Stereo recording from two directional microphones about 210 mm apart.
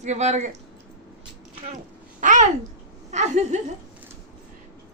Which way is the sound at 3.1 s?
35° right (ahead or behind).